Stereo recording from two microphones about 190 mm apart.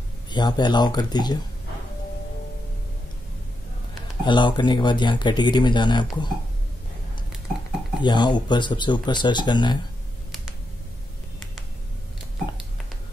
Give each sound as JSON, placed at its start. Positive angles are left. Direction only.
{"t": 0.3, "sound": "speech", "side_deg": 20}
{"t": 4.2, "sound": "speech", "side_deg": 25}
{"t": 8.0, "sound": "speech", "side_deg": 25}